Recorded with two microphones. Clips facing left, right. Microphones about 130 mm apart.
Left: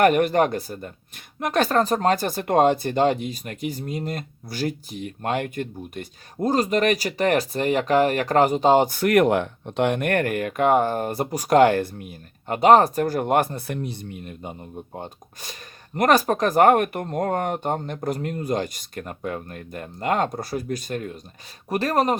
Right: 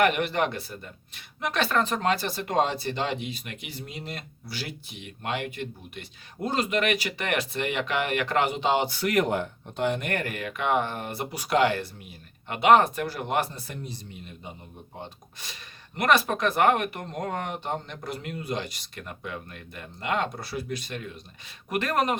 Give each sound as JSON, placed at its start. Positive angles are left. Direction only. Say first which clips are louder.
{"t": 0.0, "sound": "speech", "louder": "left 6 dB", "side_deg": 45}
{"t": 21.7, "sound": "speech", "louder": "left 4 dB", "side_deg": 35}